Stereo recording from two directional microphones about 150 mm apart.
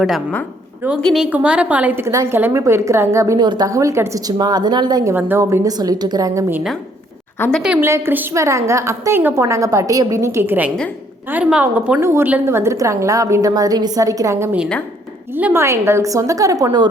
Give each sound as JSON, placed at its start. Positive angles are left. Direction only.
{"t": 0.0, "sound": "a woman's voice", "side_deg": 0}
{"t": 5.1, "sound": "a woman's voice", "side_deg": -15}
{"t": 7.3, "sound": "a woman's voice", "side_deg": 15}
{"t": 7.6, "sound": "a woman's voice", "side_deg": -5}